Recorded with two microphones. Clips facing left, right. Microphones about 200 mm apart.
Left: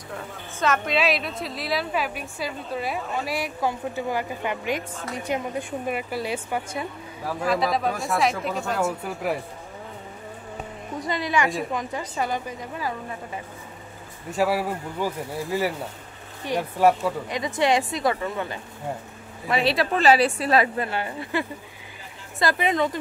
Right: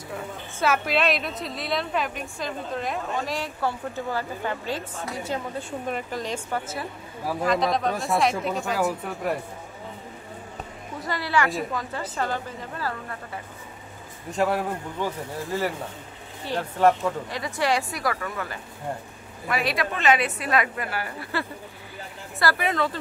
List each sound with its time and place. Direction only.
0.1 s a woman's voice: 5° right (ahead or behind)
11.1 s speech: 20° left (ahead or behind)
14.3 s a woman's voice: 5° left (ahead or behind)